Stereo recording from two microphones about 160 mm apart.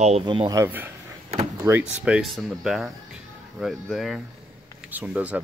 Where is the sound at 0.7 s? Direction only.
10° right (ahead or behind).